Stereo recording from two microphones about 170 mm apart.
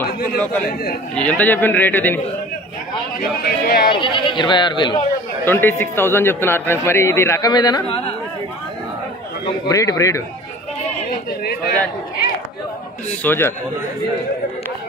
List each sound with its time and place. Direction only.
0.4 s a man's voice: 5° left (ahead or behind)
3.2 s speech: 60° left (ahead or behind)
3.9 s speech: 30° left (ahead or behind)
5.4 s a man's voice: 10° left (ahead or behind)
9.7 s speech: 20° left (ahead or behind)
13.2 s a man's voice: 10° left (ahead or behind)